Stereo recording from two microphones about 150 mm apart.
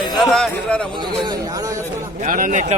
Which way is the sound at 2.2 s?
60° right (ahead or behind).